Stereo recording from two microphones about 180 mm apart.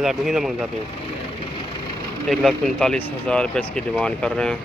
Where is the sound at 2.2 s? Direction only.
Centre (ahead or behind).